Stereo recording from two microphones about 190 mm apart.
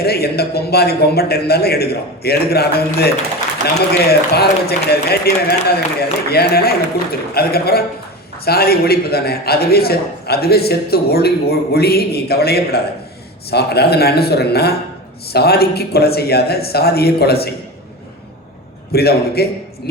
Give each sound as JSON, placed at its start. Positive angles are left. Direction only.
{"t": 0.0, "sound": "a man's voice", "side_deg": 55}
{"t": 18.9, "sound": "a man's voice", "side_deg": 55}